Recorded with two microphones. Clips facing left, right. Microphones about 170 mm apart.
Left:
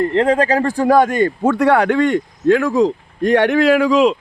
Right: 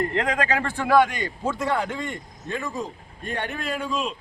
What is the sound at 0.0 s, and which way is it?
Speech, 30° left (ahead or behind).